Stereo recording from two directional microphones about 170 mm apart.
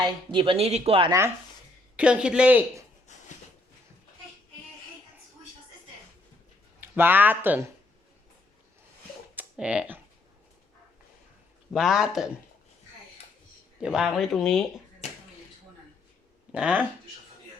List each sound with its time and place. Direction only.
0.0 s speech: 30° right (ahead or behind)
2.0 s speech: 5° right (ahead or behind)
3.1 s a sound: 45° left (ahead or behind)
6.7 s speech: 10° right (ahead or behind)
9.3 s a sound: 10° right (ahead or behind)
11.7 s speech: centre (ahead or behind)
13.8 s speech: 5° right (ahead or behind)
16.5 s speech: 10° right (ahead or behind)